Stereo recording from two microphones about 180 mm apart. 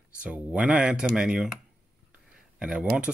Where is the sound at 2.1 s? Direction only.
5° right (ahead or behind).